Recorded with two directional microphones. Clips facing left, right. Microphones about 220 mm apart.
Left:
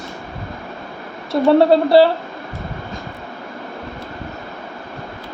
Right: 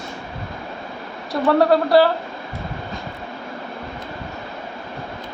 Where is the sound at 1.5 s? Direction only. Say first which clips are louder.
Left 3 dB; 25° left (ahead or behind).